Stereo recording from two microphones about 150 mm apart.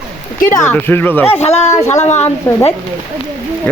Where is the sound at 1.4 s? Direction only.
45° left (ahead or behind).